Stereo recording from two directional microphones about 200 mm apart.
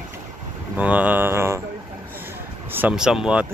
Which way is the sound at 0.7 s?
5° right (ahead or behind).